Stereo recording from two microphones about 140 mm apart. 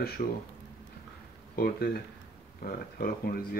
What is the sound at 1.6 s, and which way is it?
Speech, 90° left.